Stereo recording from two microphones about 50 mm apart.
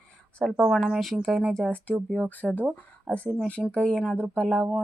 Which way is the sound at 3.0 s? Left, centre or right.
Left.